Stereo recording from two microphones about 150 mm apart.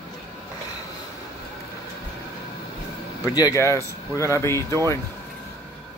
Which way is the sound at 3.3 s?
25° left (ahead or behind).